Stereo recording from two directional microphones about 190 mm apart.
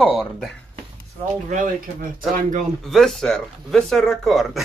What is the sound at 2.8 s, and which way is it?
Speech, centre (ahead or behind).